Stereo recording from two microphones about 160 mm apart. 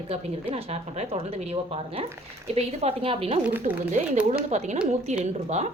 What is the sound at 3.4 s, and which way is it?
Speech, 10° right (ahead or behind).